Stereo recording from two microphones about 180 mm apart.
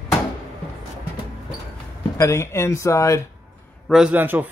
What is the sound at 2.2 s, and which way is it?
Speech, 15° left (ahead or behind).